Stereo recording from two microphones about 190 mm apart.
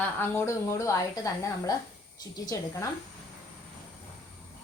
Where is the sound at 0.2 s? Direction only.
15° left (ahead or behind).